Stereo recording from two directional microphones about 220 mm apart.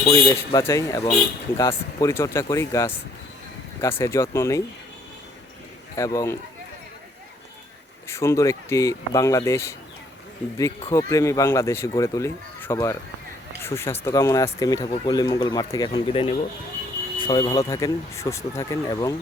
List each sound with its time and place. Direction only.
0.1 s speech: 15° left (ahead or behind)
6.0 s speech: 15° left (ahead or behind)
8.0 s speech: 10° left (ahead or behind)
10.9 s speech: 15° left (ahead or behind)